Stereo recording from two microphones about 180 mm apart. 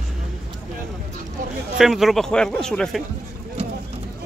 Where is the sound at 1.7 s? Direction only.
Centre (ahead or behind).